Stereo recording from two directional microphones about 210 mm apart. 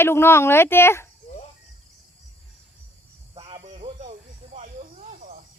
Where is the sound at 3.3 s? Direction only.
25° right (ahead or behind).